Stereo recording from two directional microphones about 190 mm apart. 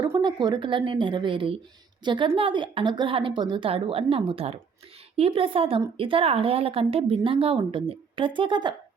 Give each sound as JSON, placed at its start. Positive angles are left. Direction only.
{"t": 0.0, "sound": "a woman's voice", "side_deg": -20}